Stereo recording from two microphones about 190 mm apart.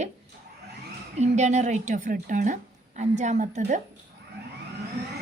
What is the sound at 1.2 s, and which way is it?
A woman's voice, 35° right (ahead or behind).